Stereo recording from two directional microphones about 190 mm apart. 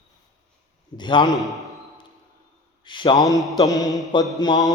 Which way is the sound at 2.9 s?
25° left (ahead or behind).